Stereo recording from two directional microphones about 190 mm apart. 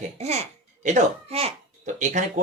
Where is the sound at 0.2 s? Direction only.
35° right (ahead or behind).